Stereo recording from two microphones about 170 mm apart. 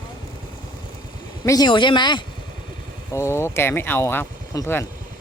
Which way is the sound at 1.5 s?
25° left (ahead or behind).